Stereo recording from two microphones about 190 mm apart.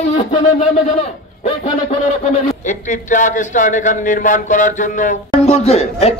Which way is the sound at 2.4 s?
40° left (ahead or behind).